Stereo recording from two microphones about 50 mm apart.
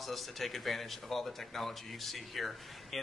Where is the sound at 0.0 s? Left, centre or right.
Centre.